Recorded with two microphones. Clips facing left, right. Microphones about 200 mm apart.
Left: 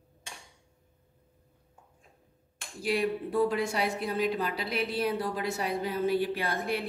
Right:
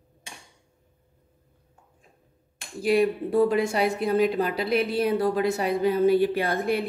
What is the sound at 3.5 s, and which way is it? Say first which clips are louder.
A woman's voice: right 6 dB; 55° right (ahead or behind).